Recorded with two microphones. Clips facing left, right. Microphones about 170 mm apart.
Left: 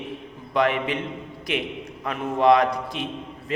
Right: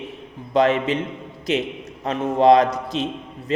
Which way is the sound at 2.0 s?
25° right (ahead or behind).